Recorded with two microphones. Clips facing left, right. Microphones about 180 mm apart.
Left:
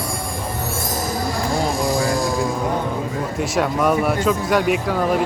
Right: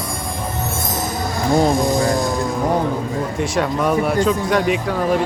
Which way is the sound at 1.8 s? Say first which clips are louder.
Right 2 dB; 20° right (ahead or behind).